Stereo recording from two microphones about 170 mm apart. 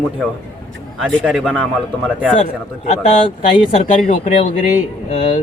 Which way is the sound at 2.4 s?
45° left (ahead or behind).